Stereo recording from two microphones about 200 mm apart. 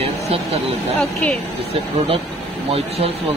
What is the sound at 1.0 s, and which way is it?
Speech, 5° left (ahead or behind).